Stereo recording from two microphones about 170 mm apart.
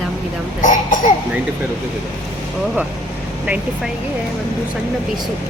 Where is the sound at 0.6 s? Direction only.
50° left (ahead or behind).